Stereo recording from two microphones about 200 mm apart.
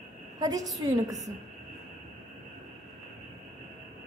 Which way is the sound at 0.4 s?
20° right (ahead or behind).